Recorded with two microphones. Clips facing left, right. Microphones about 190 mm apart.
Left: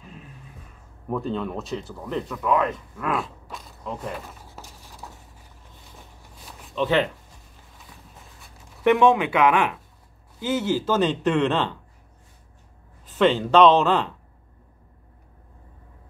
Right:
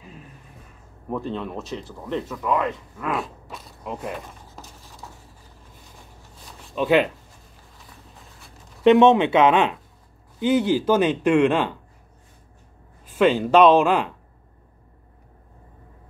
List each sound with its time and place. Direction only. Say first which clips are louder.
1.1 s speech: left 1 dB; centre (ahead or behind)
6.7 s speech: right 3 dB; 15° right (ahead or behind)
8.8 s speech: right 4 dB; 20° right (ahead or behind)
13.0 s speech: right 1 dB; 10° right (ahead or behind)